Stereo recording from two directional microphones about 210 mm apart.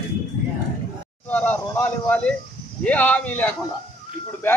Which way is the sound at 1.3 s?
10° left (ahead or behind).